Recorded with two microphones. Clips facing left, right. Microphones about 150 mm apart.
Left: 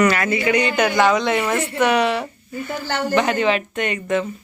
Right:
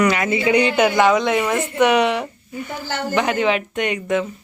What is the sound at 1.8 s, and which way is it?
Speech, 20° right (ahead or behind).